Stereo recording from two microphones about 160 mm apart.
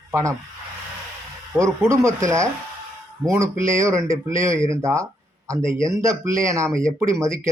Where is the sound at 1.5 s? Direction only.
20° right (ahead or behind).